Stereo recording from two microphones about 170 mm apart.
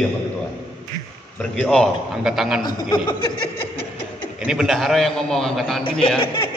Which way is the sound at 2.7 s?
25° left (ahead or behind).